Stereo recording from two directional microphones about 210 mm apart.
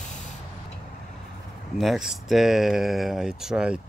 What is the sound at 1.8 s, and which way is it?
Speech, centre (ahead or behind).